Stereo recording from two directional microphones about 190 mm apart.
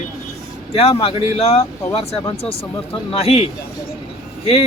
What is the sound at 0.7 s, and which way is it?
A man's voice, 30° left (ahead or behind).